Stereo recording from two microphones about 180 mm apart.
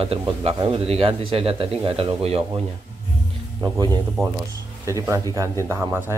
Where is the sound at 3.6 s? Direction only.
20° right (ahead or behind).